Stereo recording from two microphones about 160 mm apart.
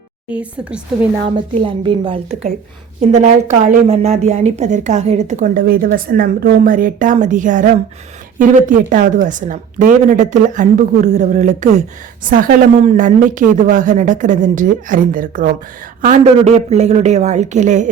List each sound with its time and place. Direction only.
0.3 s a woman's voice: 10° right (ahead or behind)
1.6 s a woman's voice: 35° right (ahead or behind)
3.0 s a woman's voice: 45° right (ahead or behind)
12.2 s a woman's voice: 60° right (ahead or behind)